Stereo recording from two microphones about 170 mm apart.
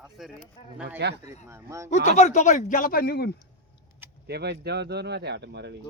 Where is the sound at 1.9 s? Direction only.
45° left (ahead or behind); by 3.3 s 65° left (ahead or behind).